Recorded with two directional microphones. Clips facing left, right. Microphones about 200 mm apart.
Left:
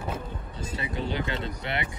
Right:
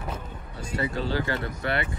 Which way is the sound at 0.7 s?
20° left (ahead or behind).